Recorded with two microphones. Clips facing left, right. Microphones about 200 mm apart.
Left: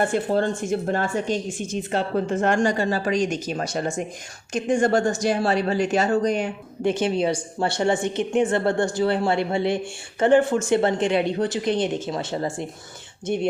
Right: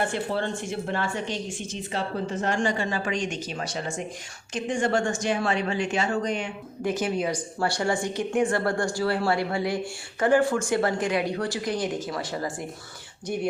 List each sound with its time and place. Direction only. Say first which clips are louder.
0.1 s a woman's voice: left 6 dB; 45° left (ahead or behind)
6.8 s speech: left 5 dB; 30° left (ahead or behind)